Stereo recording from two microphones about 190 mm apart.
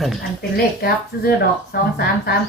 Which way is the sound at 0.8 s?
55° left (ahead or behind).